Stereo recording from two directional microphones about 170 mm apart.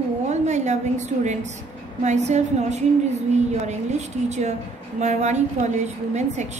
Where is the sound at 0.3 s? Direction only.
45° right (ahead or behind).